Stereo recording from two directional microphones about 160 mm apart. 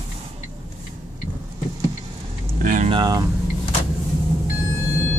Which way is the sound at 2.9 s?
25° right (ahead or behind).